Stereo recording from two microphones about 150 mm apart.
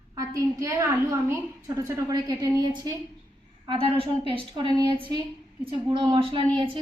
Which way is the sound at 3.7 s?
40° right (ahead or behind).